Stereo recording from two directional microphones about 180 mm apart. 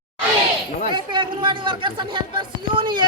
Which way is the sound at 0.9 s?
25° right (ahead or behind).